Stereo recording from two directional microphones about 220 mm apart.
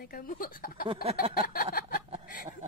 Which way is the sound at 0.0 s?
40° left (ahead or behind).